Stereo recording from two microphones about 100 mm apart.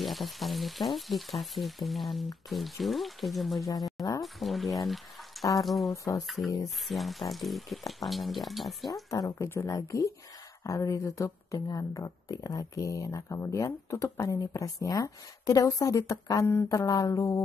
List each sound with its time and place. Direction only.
0.0 s speech: centre (ahead or behind)
4.8 s a sound: centre (ahead or behind)
5.6 s speech: centre (ahead or behind)
9.1 s speech: 35° left (ahead or behind)